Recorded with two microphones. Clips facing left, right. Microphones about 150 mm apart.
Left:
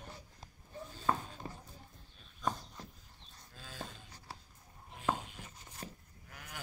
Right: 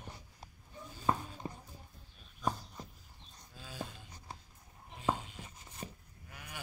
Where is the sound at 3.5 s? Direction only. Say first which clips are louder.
Right 3 dB; 10° right (ahead or behind).